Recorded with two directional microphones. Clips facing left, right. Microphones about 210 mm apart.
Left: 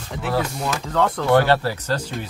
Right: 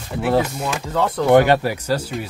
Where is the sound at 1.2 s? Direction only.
15° right (ahead or behind).